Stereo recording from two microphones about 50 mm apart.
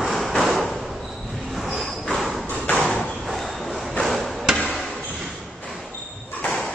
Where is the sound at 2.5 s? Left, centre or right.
Left.